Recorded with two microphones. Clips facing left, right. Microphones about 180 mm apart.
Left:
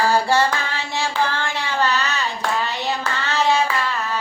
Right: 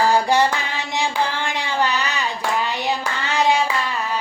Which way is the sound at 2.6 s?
15° right (ahead or behind).